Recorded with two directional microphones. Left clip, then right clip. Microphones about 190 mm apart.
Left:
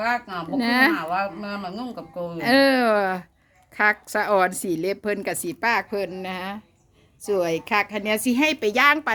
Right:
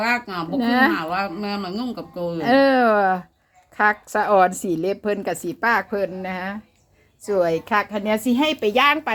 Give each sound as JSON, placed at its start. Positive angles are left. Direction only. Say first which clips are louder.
{"t": 0.0, "sound": "speech", "louder": "right 3 dB", "side_deg": 20}